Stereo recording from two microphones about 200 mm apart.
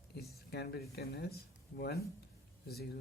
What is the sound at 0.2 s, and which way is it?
Speech, 50° left (ahead or behind).